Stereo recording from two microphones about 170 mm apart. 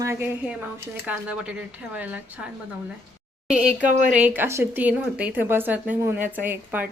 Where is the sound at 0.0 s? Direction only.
15° right (ahead or behind).